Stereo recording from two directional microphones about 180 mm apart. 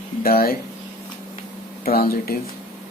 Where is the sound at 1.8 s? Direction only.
55° left (ahead or behind).